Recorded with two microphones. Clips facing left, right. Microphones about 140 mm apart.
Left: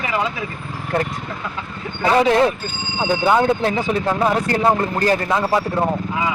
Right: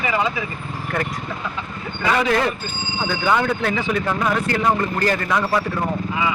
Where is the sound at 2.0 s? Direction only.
30° left (ahead or behind).